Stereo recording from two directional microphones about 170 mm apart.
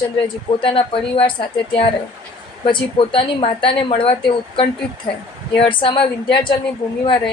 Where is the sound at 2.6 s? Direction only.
30° left (ahead or behind).